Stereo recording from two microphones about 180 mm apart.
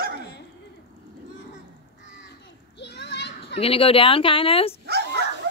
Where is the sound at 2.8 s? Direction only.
70° left (ahead or behind).